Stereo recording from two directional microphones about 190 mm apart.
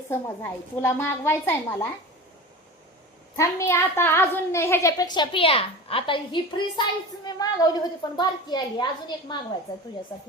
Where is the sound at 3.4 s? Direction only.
15° left (ahead or behind).